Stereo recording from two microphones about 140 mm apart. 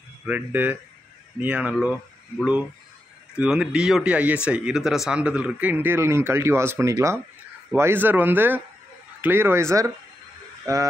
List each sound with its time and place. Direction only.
0.3 s speech: 10° right (ahead or behind)
3.3 s speech: 5° right (ahead or behind); by 10.9 s 20° right (ahead or behind)